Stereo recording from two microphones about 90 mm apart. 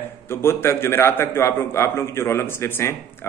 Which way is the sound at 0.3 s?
25° left (ahead or behind).